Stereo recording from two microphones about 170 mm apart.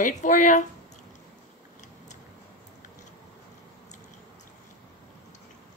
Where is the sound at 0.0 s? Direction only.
50° left (ahead or behind).